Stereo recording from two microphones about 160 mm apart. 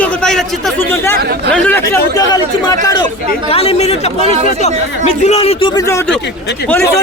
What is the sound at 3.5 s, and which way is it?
Speech, 40° left (ahead or behind).